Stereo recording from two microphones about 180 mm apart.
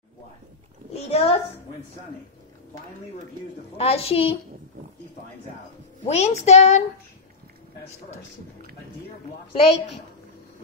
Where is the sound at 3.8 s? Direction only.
35° left (ahead or behind).